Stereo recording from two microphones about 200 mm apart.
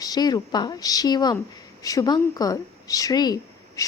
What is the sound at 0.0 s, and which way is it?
Speech, 20° left (ahead or behind).